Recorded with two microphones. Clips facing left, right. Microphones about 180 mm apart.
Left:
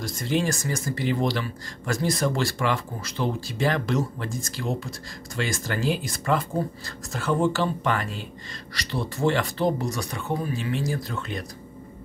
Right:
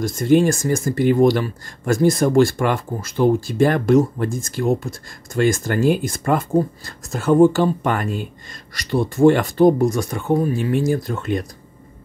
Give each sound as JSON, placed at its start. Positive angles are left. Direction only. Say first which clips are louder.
{"t": 0.0, "sound": "speech", "louder": "right 10 dB", "side_deg": -50}